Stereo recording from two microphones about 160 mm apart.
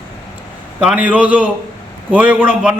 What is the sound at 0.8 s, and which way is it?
A man's voice, 10° right (ahead or behind).